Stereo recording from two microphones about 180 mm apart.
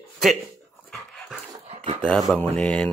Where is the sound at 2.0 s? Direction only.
Centre (ahead or behind).